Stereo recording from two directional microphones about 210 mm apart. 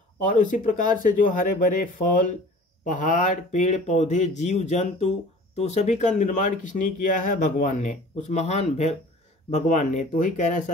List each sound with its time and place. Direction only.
0.2 s speech: 40° left (ahead or behind)